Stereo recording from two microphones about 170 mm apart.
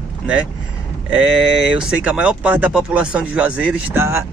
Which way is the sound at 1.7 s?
5° right (ahead or behind).